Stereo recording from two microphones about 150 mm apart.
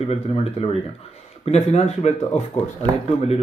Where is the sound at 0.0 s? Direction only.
40° left (ahead or behind).